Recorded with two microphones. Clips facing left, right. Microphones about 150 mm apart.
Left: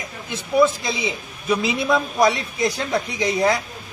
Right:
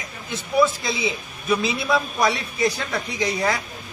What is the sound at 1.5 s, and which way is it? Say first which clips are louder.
Speech: left 2 dB; 15° left (ahead or behind).